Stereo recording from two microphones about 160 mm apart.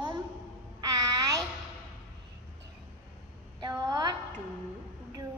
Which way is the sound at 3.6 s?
25° right (ahead or behind).